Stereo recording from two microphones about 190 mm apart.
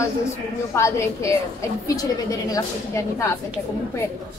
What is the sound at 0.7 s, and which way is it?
Speech, 15° left (ahead or behind).